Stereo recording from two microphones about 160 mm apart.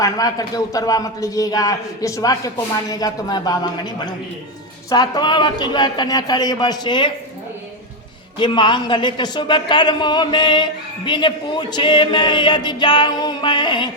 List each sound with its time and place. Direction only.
0.0 s a woman's voice: 25° left (ahead or behind)
8.4 s a woman's voice: 30° left (ahead or behind)